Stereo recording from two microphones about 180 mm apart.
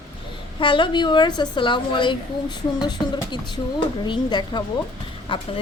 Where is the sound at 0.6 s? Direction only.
25° left (ahead or behind).